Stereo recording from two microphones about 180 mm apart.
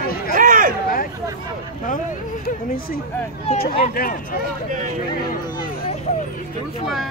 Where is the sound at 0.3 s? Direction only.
45° right (ahead or behind).